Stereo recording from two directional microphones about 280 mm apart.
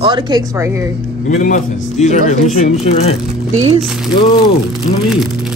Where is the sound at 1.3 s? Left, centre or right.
Left.